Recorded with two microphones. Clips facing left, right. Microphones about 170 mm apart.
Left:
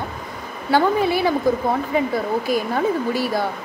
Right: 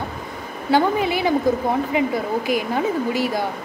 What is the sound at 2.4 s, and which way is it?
Speech, 15° right (ahead or behind).